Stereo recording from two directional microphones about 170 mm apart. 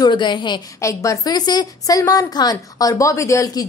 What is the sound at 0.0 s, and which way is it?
A woman's voice, 25° left (ahead or behind).